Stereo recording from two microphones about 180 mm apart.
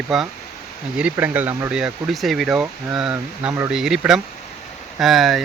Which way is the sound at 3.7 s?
5° right (ahead or behind).